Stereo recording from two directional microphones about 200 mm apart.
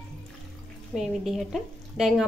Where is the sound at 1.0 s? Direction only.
Centre (ahead or behind).